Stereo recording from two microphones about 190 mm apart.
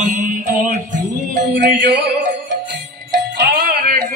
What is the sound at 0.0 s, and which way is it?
Music, 40° right (ahead or behind).